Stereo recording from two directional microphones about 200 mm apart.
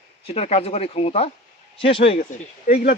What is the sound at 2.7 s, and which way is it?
Speech, 45° left (ahead or behind).